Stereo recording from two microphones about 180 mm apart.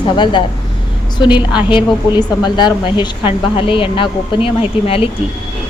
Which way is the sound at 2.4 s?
25° left (ahead or behind).